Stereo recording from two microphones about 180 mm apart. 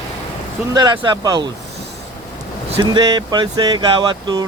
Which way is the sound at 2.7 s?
25° right (ahead or behind).